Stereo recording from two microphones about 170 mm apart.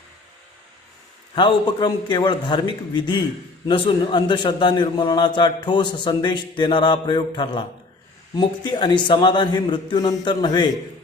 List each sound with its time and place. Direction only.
1.4 s a man's voice: 25° left (ahead or behind)